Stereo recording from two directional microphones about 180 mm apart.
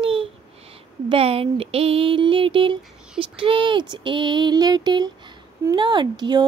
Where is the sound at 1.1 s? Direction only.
30° right (ahead or behind).